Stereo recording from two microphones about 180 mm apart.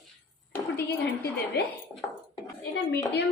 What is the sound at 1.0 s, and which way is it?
Speech, 65° left (ahead or behind).